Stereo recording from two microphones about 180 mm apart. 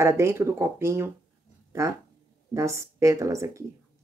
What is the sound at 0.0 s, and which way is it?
Speech, 15° right (ahead or behind).